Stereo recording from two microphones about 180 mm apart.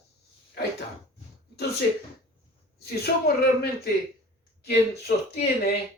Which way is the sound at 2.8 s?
60° left (ahead or behind).